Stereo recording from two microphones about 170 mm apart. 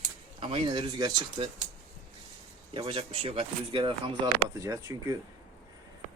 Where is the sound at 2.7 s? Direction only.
30° right (ahead or behind).